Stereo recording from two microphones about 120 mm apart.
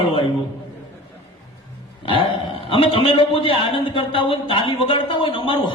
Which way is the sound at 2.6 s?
50° left (ahead or behind).